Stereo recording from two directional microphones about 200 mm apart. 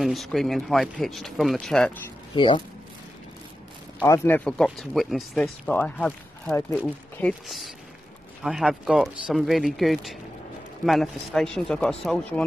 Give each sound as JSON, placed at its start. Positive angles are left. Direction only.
{"t": 0.0, "sound": "speech", "side_deg": 0}
{"t": 2.3, "sound": "speech", "side_deg": 25}
{"t": 4.0, "sound": "speech", "side_deg": 15}